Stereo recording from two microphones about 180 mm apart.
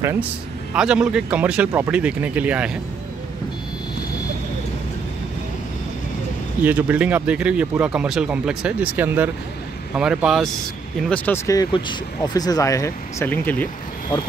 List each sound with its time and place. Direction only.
0.0 s speech: 15° right (ahead or behind)
6.6 s speech: 10° right (ahead or behind)
11.1 s speech: 10° left (ahead or behind)